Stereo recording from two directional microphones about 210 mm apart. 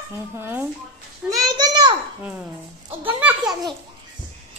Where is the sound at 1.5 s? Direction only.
20° right (ahead or behind).